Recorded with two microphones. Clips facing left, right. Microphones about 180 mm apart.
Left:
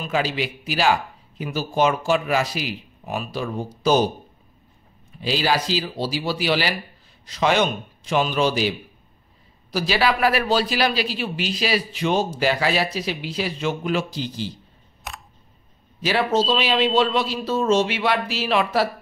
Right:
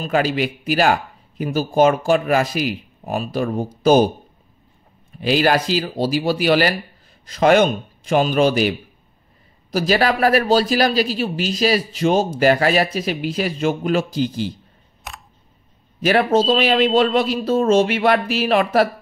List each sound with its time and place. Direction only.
0.1 s a man's voice: 50° right (ahead or behind)
5.2 s a man's voice: 55° right (ahead or behind)
15.1 s camera: centre (ahead or behind)
16.0 s a man's voice: 55° right (ahead or behind)